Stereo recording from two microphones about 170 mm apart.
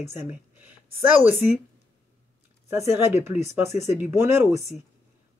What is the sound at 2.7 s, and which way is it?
Speech, 15° right (ahead or behind).